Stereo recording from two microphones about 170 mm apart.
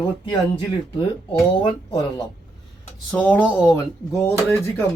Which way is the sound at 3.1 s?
10° left (ahead or behind).